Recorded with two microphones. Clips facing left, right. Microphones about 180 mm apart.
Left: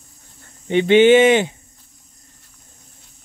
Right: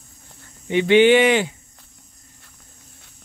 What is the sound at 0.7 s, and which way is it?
Speech, 25° left (ahead or behind).